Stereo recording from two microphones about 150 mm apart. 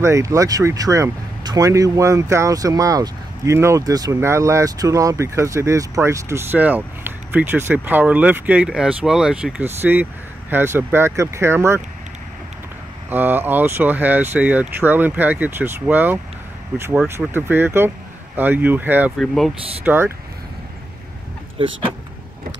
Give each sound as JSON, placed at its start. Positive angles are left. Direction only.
{"t": 0.0, "sound": "speech", "side_deg": -20}
{"t": 13.1, "sound": "speech", "side_deg": -15}
{"t": 19.1, "sound": "speech", "side_deg": 0}
{"t": 19.8, "sound": "speech", "side_deg": -10}
{"t": 21.6, "sound": "speech", "side_deg": -35}